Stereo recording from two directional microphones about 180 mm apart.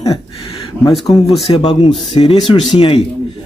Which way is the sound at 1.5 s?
30° left (ahead or behind).